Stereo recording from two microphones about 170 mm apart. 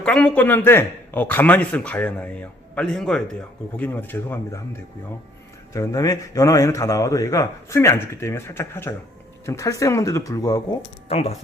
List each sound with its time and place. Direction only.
0.0 s a man's voice: 5° left (ahead or behind); by 10.8 s 20° left (ahead or behind)
11.1 s speech: 35° left (ahead or behind)